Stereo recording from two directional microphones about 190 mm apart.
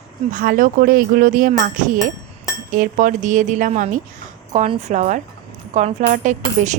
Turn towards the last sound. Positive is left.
turn(degrees=-40)  # may be behind; listen again after turning